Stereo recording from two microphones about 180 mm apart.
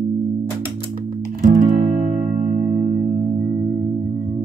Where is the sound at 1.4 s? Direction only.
45° right (ahead or behind).